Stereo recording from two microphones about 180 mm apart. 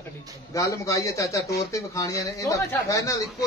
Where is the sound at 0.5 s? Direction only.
15° left (ahead or behind).